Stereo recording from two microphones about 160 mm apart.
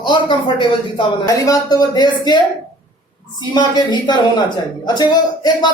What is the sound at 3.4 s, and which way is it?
Speech, 25° left (ahead or behind).